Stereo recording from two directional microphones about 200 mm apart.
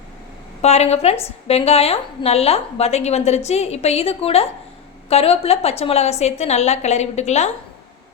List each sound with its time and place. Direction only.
0.6 s a woman's voice: 35° left (ahead or behind)